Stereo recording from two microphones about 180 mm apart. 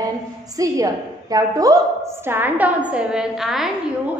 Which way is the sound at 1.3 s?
20° right (ahead or behind).